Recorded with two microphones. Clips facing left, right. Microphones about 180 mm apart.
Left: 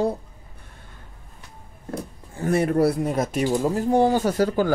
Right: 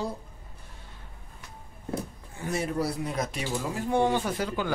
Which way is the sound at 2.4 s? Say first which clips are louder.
Left 9 dB; 60° left (ahead or behind).